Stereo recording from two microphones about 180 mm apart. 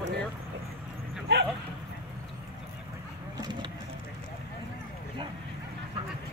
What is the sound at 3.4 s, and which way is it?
Speech, 25° right (ahead or behind).